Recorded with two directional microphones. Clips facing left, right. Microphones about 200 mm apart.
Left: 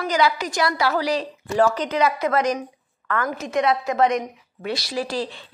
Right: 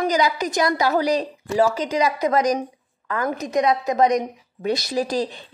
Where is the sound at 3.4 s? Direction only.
15° right (ahead or behind).